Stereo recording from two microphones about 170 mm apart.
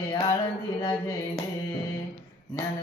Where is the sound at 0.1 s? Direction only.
20° left (ahead or behind).